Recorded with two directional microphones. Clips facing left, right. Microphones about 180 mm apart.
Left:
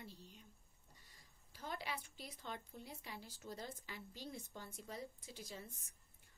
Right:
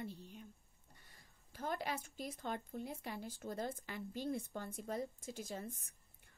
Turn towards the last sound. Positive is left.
turn(degrees=-50)  # may be behind; listen again after turning